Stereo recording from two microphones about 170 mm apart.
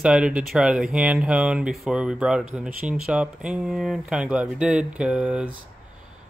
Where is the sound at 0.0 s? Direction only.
5° right (ahead or behind).